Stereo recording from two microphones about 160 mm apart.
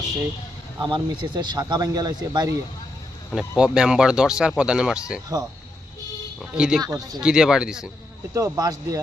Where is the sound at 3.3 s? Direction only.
5° right (ahead or behind).